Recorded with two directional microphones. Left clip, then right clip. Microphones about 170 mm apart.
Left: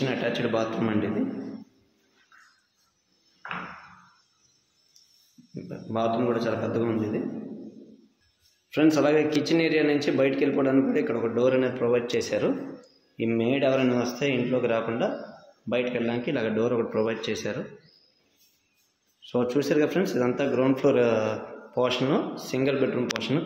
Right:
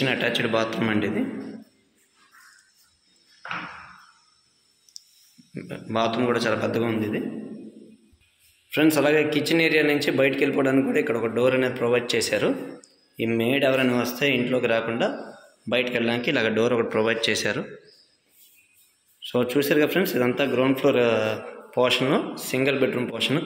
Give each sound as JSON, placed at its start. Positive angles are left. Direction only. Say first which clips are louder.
{"t": 0.0, "sound": "a man's voice", "louder": "right 4 dB", "side_deg": 0}
{"t": 5.5, "sound": "a man's voice", "louder": "right 4 dB", "side_deg": -5}
{"t": 8.6, "sound": "a man's voice", "louder": "right 2 dB", "side_deg": 0}
{"t": 19.2, "sound": "a man's voice", "louder": "right 3 dB", "side_deg": -5}